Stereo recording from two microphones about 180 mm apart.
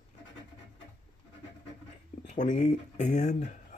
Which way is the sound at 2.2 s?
45° left (ahead or behind).